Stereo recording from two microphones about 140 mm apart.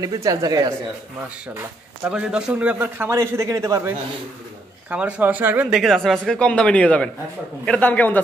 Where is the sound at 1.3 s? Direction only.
10° right (ahead or behind).